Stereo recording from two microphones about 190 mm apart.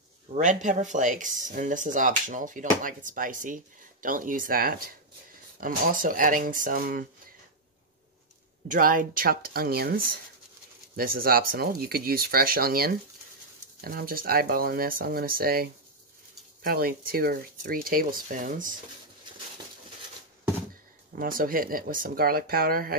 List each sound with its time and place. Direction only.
0.3 s speech: 40° right (ahead or behind)
8.6 s speech: 45° right (ahead or behind)
21.1 s speech: 50° right (ahead or behind)